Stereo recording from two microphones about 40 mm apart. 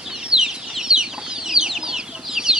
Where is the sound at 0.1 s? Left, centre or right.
Centre.